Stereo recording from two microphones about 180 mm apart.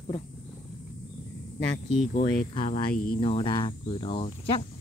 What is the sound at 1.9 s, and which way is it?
Speech, 40° right (ahead or behind).